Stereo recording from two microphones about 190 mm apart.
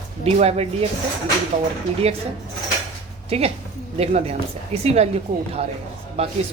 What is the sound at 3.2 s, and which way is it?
Speech, 30° right (ahead or behind).